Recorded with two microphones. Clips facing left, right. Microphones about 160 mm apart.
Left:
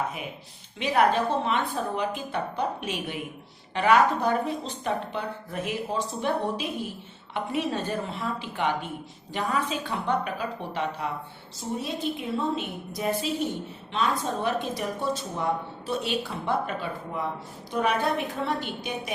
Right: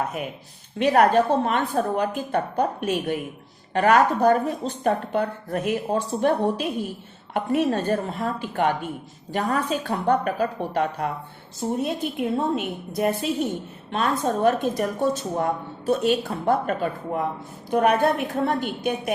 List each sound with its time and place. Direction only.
0.8 s a woman's voice: 50° right (ahead or behind)